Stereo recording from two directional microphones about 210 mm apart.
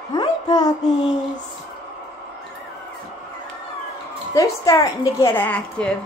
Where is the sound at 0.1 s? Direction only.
20° left (ahead or behind).